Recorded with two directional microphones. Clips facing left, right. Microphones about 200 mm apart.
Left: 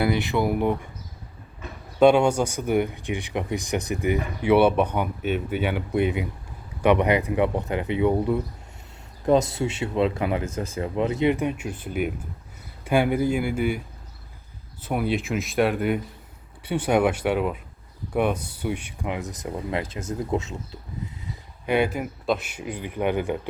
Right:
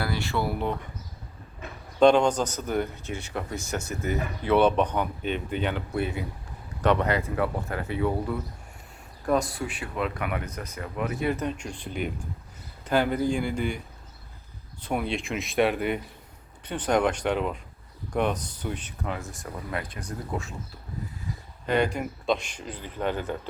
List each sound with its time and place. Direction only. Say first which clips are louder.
0.0 s speech: left 6 dB; 20° left (ahead or behind)
2.0 s speech: left 2 dB; 10° left (ahead or behind)
21.7 s speech: left 2 dB; 5° left (ahead or behind)